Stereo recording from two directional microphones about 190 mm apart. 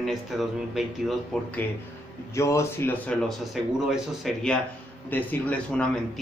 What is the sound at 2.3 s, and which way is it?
A man's voice, 15° left (ahead or behind).